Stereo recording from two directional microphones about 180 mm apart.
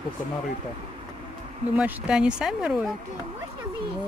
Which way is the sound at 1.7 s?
5° right (ahead or behind).